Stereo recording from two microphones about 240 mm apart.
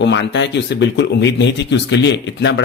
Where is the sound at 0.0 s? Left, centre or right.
Left.